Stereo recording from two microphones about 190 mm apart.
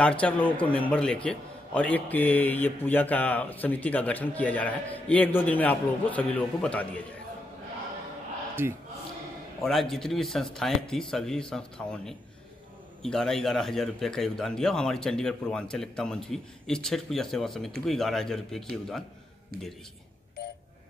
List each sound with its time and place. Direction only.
0.0 s a man's voice: 5° left (ahead or behind)
8.6 s speech: 10° right (ahead or behind)
9.6 s a man's voice: centre (ahead or behind)